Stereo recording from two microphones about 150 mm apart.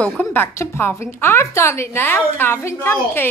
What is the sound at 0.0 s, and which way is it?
A woman's voice, 10° left (ahead or behind).